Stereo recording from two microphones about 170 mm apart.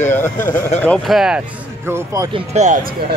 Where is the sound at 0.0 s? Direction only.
10° left (ahead or behind).